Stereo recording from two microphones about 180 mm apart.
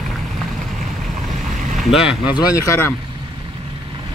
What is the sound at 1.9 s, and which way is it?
Speech, 5° right (ahead or behind).